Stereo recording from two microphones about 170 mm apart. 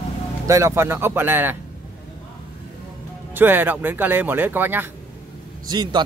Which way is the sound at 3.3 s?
10° right (ahead or behind).